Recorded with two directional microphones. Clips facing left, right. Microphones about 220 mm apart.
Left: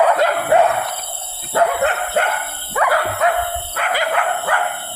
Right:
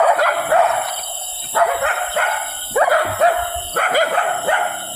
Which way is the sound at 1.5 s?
30° left (ahead or behind).